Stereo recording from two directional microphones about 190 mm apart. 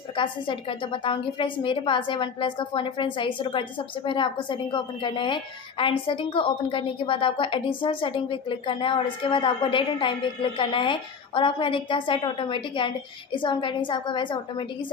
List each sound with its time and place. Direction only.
0.1 s a woman's voice: 25° left (ahead or behind)